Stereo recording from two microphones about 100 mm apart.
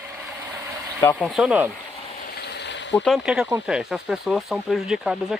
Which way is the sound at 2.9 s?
Centre (ahead or behind).